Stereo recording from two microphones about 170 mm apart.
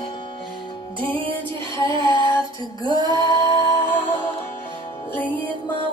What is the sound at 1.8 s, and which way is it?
Child singing, 30° right (ahead or behind).